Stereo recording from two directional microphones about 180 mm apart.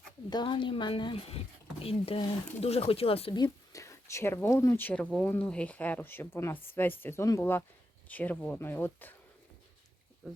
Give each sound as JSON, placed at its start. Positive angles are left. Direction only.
{"t": 0.3, "sound": "speech", "side_deg": 25}
{"t": 10.2, "sound": "speech", "side_deg": 0}